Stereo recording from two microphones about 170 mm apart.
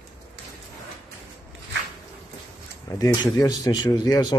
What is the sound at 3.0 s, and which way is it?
Speech, 20° left (ahead or behind).